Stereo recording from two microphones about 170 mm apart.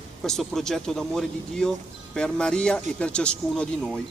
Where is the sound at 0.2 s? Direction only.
Centre (ahead or behind).